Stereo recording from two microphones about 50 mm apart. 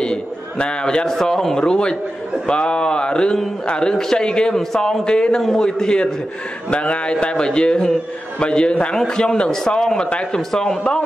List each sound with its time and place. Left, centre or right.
0.0 s a sound: centre
1.0 s a man's voice: centre
5.4 s a man's voice: centre
5.7 s a man's voice: centre
10.5 s a man's voice: centre